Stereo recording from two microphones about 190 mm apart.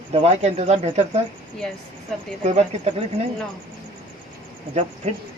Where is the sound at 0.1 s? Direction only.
35° right (ahead or behind).